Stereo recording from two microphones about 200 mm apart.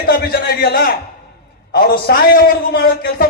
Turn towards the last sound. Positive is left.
turn(degrees=45)  # may be behind; listen again after turning